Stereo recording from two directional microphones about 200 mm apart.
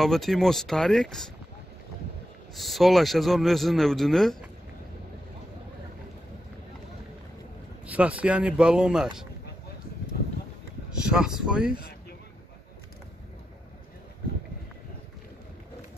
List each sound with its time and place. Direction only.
0.0 s a man's voice: centre (ahead or behind)
2.5 s a man's voice: centre (ahead or behind)
7.8 s a man's voice: 5° right (ahead or behind)
11.0 s speech: 5° right (ahead or behind)